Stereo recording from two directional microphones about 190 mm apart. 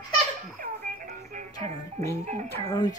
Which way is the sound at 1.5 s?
20° left (ahead or behind).